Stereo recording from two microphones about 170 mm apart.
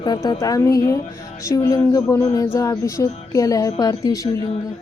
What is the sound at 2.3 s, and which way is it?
Music, 20° left (ahead or behind).